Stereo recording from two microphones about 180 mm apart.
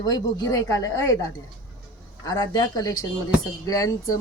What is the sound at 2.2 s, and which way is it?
Speech, 20° left (ahead or behind).